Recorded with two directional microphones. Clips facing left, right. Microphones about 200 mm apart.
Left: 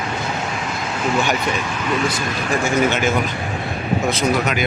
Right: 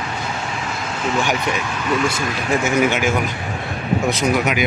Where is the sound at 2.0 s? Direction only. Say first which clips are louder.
Right 1 dB; 25° right (ahead or behind).